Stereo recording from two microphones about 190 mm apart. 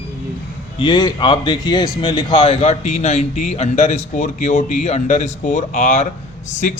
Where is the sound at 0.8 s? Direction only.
20° left (ahead or behind).